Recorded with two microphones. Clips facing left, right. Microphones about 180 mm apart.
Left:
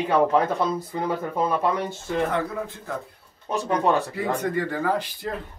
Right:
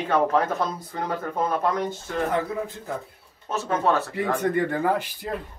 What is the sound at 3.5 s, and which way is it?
Speech, 15° left (ahead or behind).